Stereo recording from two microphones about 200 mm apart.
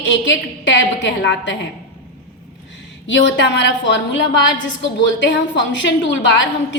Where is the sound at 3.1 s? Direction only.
60° left (ahead or behind).